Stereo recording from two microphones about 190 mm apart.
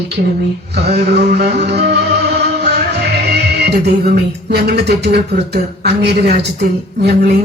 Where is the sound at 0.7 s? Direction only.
60° right (ahead or behind).